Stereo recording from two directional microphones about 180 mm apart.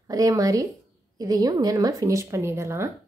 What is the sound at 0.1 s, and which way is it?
A woman's voice, 20° right (ahead or behind).